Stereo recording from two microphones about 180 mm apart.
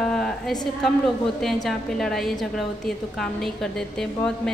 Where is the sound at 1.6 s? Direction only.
Centre (ahead or behind).